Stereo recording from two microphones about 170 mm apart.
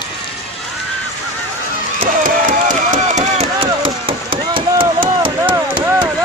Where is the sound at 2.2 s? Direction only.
50° right (ahead or behind); by 4.6 s 30° right (ahead or behind).